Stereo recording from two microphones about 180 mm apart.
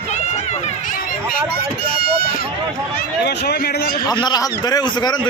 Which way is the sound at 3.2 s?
65° left (ahead or behind).